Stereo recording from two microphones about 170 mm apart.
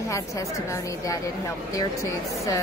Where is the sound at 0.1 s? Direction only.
20° left (ahead or behind).